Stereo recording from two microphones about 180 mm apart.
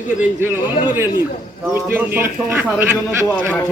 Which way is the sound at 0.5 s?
25° left (ahead or behind).